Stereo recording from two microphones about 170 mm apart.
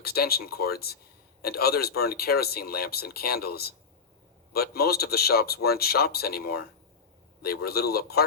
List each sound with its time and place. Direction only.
0.0 s speech: 65° left (ahead or behind)